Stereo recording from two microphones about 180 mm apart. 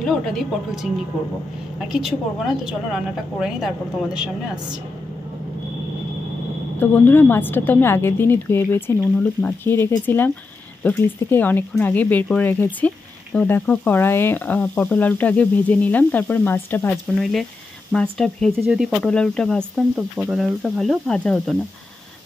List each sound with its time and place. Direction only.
0.0 s a woman's voice: centre (ahead or behind)
1.8 s a woman's voice: centre (ahead or behind)
6.8 s speech: 10° left (ahead or behind)
16.9 s a woman's voice: centre (ahead or behind)